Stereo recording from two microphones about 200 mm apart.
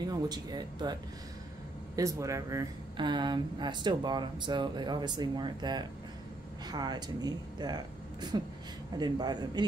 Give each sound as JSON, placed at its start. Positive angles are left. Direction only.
{"t": 0.0, "sound": "speech", "side_deg": -20}
{"t": 2.0, "sound": "speech", "side_deg": -15}